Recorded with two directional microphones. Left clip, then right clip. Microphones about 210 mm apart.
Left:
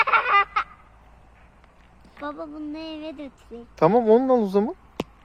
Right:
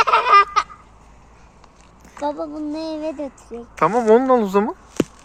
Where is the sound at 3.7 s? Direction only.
25° left (ahead or behind).